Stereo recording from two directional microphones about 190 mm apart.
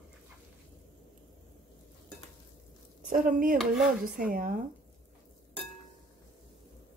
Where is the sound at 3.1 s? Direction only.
45° right (ahead or behind).